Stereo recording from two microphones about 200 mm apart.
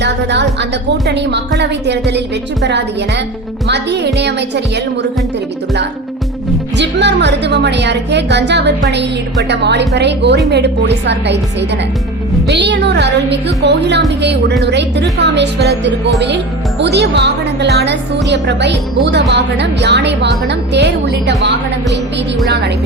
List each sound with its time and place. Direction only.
0.0 s a sound: 60° right (ahead or behind)
1.0 s speech: 60° right (ahead or behind)
3.7 s speech: 55° right (ahead or behind)
6.7 s speech: 60° right (ahead or behind)
12.5 s speech: 60° right (ahead or behind)